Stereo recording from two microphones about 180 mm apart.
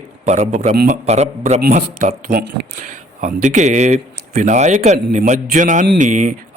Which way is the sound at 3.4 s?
40° right (ahead or behind).